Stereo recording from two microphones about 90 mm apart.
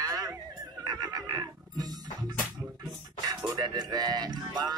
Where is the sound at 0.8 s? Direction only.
45° right (ahead or behind).